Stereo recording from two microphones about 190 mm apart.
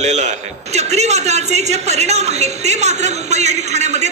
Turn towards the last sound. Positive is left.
turn(degrees=-35)  # may be behind; listen again after turning